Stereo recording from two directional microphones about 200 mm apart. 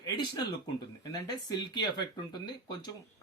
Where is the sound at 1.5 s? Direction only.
20° left (ahead or behind).